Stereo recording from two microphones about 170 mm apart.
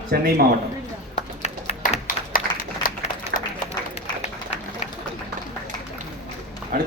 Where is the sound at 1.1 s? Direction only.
40° left (ahead or behind); by 2.9 s 55° left (ahead or behind).